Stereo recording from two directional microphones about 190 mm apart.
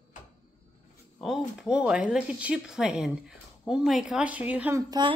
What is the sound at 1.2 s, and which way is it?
Speech, 5° right (ahead or behind).